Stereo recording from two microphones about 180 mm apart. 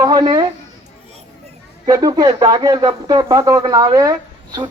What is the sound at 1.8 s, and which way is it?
Speech, 20° right (ahead or behind).